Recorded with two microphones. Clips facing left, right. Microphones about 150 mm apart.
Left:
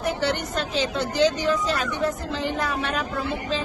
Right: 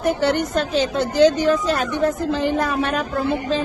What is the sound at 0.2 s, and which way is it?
A woman's voice, 45° right (ahead or behind).